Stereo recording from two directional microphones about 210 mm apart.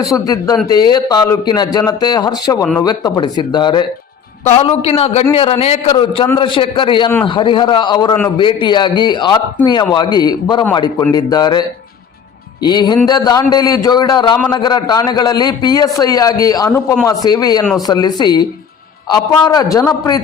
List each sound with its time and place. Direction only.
0.0 s a man's voice: 15° left (ahead or behind)
12.6 s a man's voice: 20° left (ahead or behind)
17.6 s speech: 5° left (ahead or behind)
17.8 s a man's voice: 20° left (ahead or behind)